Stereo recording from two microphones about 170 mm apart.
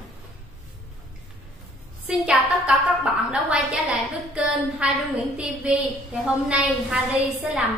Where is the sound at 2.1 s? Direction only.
5° right (ahead or behind).